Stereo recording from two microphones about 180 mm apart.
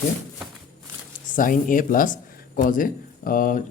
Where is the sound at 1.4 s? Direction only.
50° left (ahead or behind).